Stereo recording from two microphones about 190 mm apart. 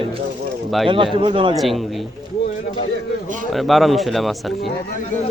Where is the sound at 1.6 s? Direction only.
Centre (ahead or behind).